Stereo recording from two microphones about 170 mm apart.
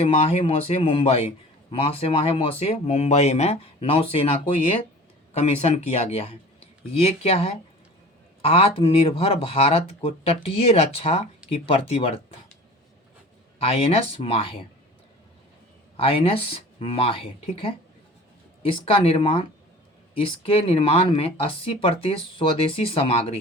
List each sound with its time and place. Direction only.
0.0 s speech: 35° left (ahead or behind)
13.6 s speech: 35° left (ahead or behind)
16.0 s speech: 35° left (ahead or behind)